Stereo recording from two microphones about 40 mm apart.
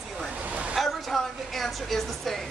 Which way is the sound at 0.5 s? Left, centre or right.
Right.